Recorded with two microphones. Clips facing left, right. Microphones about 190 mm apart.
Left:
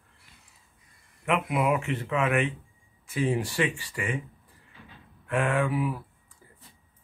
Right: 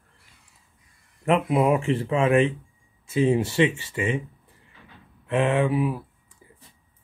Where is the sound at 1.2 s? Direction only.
30° right (ahead or behind).